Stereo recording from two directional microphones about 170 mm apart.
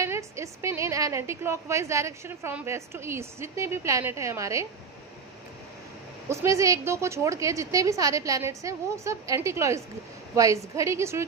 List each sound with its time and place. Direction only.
0.0 s a woman's voice: 15° right (ahead or behind)
6.2 s a woman's voice: 15° right (ahead or behind)